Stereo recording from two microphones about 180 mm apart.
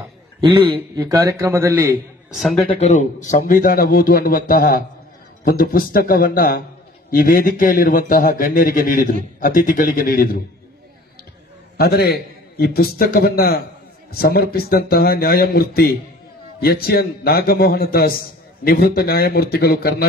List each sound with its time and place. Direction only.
0.4 s a man's voice: 30° right (ahead or behind)
1.1 s speech: 15° right (ahead or behind)
2.3 s speech: centre (ahead or behind)
2.7 s a man's voice: 40° left (ahead or behind)
11.7 s a man's voice: 60° left (ahead or behind)